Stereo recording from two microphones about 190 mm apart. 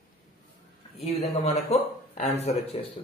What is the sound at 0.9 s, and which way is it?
A man's voice, 35° left (ahead or behind).